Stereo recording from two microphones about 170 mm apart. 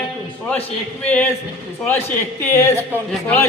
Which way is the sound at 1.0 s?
10° left (ahead or behind).